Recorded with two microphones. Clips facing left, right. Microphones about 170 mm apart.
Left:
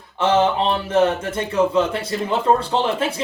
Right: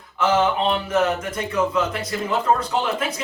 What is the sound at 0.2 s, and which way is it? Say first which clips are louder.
Speech: left 2 dB; 30° left (ahead or behind).